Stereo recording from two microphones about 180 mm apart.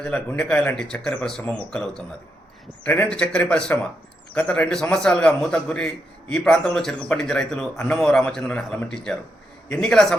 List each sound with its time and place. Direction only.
0.0 s a man's voice: 5° left (ahead or behind)